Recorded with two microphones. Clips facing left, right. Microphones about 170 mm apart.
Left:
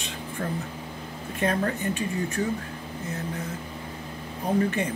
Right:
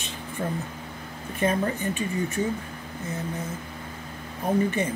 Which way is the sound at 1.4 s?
5° right (ahead or behind).